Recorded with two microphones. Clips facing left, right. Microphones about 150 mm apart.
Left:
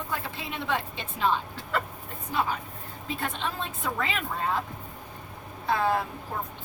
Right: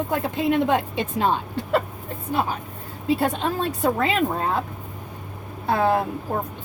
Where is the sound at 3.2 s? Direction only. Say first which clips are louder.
Right 9 dB; 40° right (ahead or behind).